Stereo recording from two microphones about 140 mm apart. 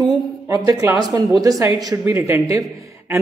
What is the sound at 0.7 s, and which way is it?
Speech, 25° right (ahead or behind).